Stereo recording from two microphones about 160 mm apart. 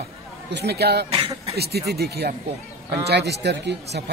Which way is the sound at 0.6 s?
90° right.